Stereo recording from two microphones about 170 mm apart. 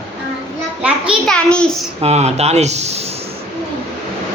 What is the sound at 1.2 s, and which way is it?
Speech, 5° left (ahead or behind).